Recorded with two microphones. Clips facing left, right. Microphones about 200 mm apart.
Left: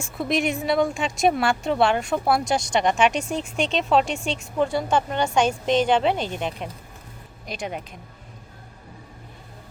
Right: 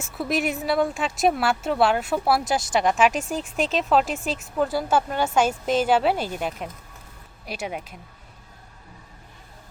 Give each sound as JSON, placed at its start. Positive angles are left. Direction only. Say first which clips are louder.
{"t": 0.0, "sound": "speech", "louder": "left 1 dB", "side_deg": -5}